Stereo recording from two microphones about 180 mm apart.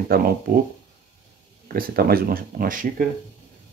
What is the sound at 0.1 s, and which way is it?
Speech, 55° right (ahead or behind).